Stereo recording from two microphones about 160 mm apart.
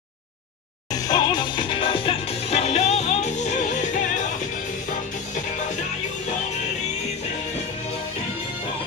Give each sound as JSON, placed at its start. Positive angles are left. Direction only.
{"t": 0.9, "sound": "music", "side_deg": 25}